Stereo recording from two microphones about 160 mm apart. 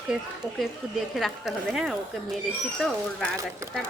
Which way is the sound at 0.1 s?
5° right (ahead or behind).